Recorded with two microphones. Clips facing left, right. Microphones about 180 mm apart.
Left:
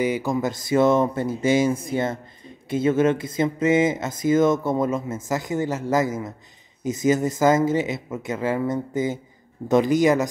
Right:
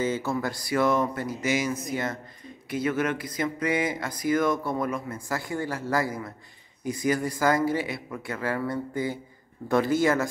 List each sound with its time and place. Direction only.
0.0 s speech: 15° left (ahead or behind)